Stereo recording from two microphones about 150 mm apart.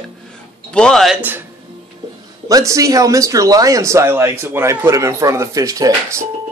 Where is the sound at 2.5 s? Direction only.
20° right (ahead or behind).